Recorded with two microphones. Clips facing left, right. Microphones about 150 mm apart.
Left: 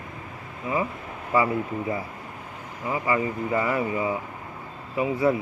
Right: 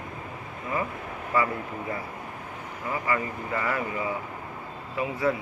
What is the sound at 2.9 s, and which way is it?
Speech, 20° left (ahead or behind).